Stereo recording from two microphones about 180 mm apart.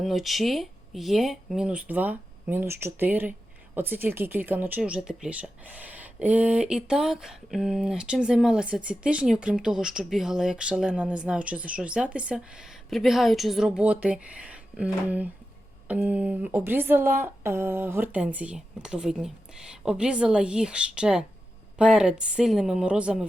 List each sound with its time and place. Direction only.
0.0 s speech: centre (ahead or behind)